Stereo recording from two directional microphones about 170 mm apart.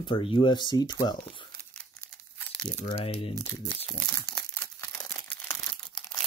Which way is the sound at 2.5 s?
5° left (ahead or behind).